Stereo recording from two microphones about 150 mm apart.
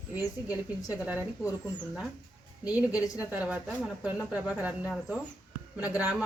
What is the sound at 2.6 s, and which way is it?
Speech, 10° right (ahead or behind).